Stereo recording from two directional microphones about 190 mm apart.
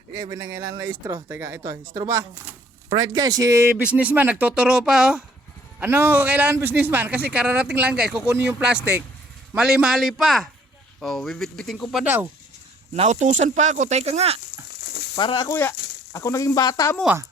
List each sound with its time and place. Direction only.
0.2 s speech: 15° right (ahead or behind)
12.9 s speech: 40° right (ahead or behind)
15.1 s speech: 25° left (ahead or behind)